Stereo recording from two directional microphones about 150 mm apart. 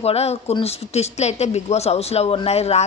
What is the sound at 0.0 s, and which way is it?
Speech, 45° left (ahead or behind).